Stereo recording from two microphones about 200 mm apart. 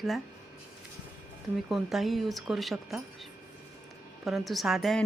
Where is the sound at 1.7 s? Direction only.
Centre (ahead or behind).